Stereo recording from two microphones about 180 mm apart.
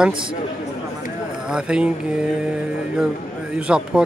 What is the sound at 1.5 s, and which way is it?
Speech, 5° right (ahead or behind).